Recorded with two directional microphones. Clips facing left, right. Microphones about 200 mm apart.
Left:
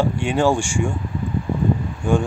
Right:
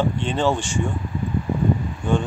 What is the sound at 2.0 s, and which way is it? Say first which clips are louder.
Speech: left 3 dB; 10° left (ahead or behind).